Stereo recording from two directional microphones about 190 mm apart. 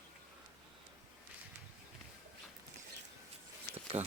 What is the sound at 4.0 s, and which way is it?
Speech, 30° right (ahead or behind).